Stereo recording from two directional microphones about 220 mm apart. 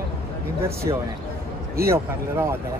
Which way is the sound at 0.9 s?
20° right (ahead or behind).